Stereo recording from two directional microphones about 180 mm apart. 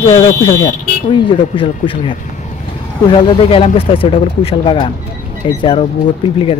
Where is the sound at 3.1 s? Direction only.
30° left (ahead or behind).